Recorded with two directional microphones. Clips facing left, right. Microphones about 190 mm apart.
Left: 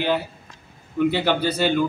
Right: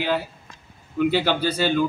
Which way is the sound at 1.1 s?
15° left (ahead or behind).